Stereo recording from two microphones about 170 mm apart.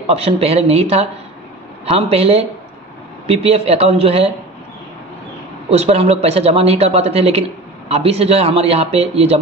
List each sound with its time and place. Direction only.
0.0 s speech: 35° right (ahead or behind)
5.7 s speech: 40° right (ahead or behind)